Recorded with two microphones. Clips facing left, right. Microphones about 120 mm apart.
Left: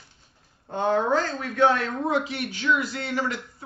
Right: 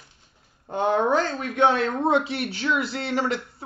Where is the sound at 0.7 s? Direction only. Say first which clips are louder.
Right 1 dB; 20° right (ahead or behind).